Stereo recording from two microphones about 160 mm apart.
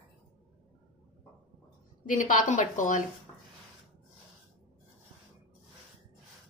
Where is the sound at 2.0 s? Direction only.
55° left (ahead or behind).